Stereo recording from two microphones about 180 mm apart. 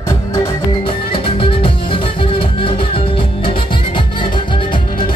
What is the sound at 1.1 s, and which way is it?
Music, 30° left (ahead or behind).